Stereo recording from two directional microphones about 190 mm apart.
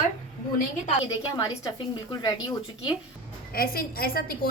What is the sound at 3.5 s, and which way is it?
A woman's voice, 50° left (ahead or behind).